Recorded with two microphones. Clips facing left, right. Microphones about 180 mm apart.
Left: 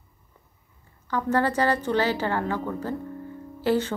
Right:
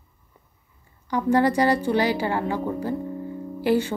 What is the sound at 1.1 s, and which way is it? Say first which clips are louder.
A woman's voice: right 4 dB; 10° right (ahead or behind).